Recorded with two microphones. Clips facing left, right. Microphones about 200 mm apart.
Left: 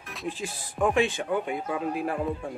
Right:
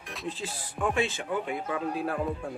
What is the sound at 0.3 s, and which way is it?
Speech, 15° left (ahead or behind).